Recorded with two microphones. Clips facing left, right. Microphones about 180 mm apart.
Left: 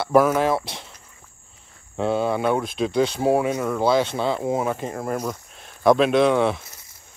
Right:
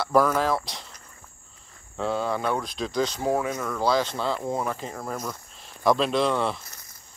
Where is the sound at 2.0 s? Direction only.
20° left (ahead or behind).